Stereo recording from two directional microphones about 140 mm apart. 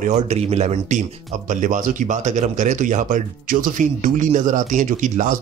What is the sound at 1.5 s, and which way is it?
Speech, 65° right (ahead or behind).